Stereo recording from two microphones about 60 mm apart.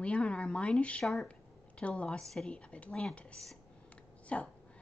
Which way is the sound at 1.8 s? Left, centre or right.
Centre.